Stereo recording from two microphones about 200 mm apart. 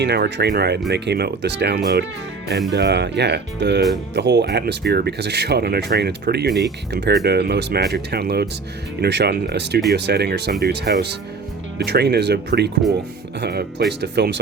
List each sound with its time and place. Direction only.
0.0 s speech: 55° right (ahead or behind)